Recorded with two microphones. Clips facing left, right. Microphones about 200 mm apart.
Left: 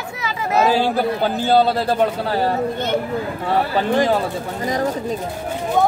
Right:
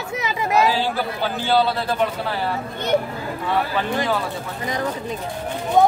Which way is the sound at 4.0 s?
40° left (ahead or behind).